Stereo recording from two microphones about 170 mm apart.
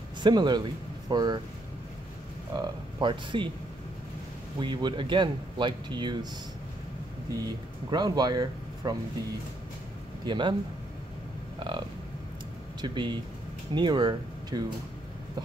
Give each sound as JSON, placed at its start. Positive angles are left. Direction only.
{"t": 0.2, "sound": "a man's voice", "side_deg": -25}
{"t": 2.5, "sound": "speech", "side_deg": -25}
{"t": 4.6, "sound": "speech", "side_deg": -30}
{"t": 7.4, "sound": "speech", "side_deg": -25}
{"t": 10.2, "sound": "speech", "side_deg": -30}
{"t": 12.8, "sound": "speech", "side_deg": -30}